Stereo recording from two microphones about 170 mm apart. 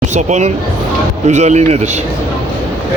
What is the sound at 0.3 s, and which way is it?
A man's voice, 45° right (ahead or behind).